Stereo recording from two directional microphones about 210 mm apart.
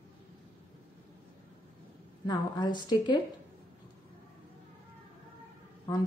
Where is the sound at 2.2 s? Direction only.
20° left (ahead or behind).